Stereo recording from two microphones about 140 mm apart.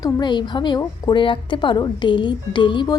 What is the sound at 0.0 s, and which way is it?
A woman's voice, 30° left (ahead or behind).